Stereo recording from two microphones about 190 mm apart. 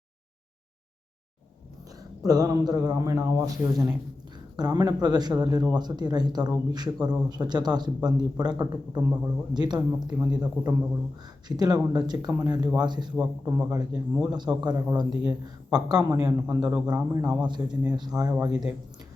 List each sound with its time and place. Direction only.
2.2 s a man's voice: 20° right (ahead or behind)
13.1 s a man's voice: 10° right (ahead or behind)